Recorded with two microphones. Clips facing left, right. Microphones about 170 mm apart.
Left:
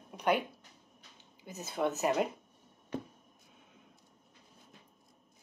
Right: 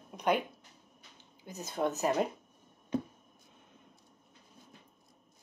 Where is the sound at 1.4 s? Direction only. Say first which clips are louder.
Even; 5° left (ahead or behind).